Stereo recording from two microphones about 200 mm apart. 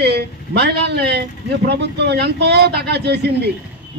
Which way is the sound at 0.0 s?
55° right (ahead or behind).